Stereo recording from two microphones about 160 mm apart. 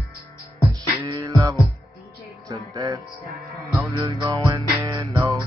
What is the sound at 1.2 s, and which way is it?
Music, 20° right (ahead or behind).